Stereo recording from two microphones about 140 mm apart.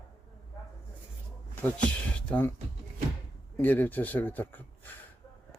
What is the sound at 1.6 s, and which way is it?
Speech, 10° left (ahead or behind).